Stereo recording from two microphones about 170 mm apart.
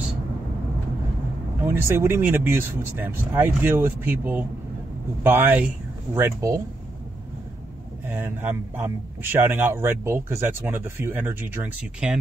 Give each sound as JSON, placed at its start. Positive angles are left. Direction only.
{"t": 1.6, "sound": "a man's voice", "side_deg": -15}
{"t": 8.0, "sound": "a man's voice", "side_deg": -10}